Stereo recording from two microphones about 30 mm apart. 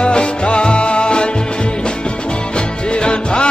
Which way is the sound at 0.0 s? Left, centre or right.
Left.